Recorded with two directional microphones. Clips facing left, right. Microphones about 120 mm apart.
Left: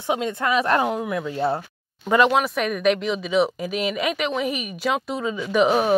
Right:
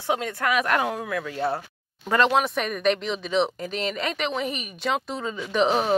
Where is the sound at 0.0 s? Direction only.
20° left (ahead or behind).